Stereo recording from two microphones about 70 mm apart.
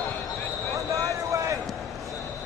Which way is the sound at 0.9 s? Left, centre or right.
Right.